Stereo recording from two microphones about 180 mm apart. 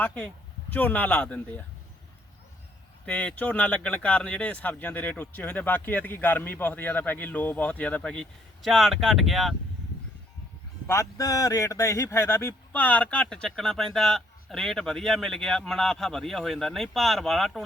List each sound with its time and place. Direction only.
0.0 s speech: 10° left (ahead or behind)
3.1 s speech: 10° left (ahead or behind)
10.8 s speech: 15° left (ahead or behind); by 17.6 s centre (ahead or behind)